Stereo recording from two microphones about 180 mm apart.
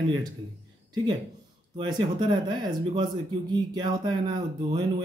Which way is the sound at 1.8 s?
25° right (ahead or behind).